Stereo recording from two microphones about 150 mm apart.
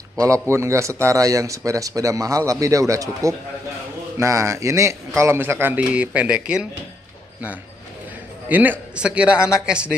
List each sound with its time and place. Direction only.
0.2 s a man's voice: 20° right (ahead or behind)
8.5 s a man's voice: 10° right (ahead or behind)